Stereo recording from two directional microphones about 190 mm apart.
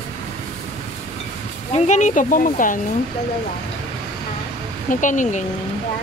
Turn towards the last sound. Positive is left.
turn(degrees=40)  # may be behind; listen again after turning